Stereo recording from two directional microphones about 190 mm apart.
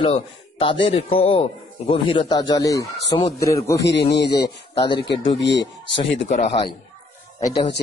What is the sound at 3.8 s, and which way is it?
A man's voice, 60° left (ahead or behind).